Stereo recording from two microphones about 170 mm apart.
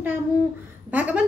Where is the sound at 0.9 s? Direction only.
10° right (ahead or behind).